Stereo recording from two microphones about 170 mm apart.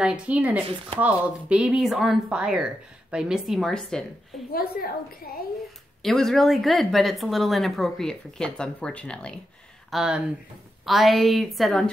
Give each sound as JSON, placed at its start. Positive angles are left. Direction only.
{"t": 0.0, "sound": "speech", "side_deg": -5}
{"t": 4.5, "sound": "a woman's voice", "side_deg": 60}
{"t": 6.0, "sound": "speech", "side_deg": 0}